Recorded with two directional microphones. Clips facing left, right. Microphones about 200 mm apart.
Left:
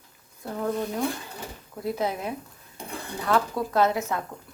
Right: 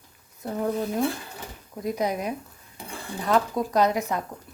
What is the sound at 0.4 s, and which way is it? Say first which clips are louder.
Speech: right 2 dB; 20° right (ahead or behind).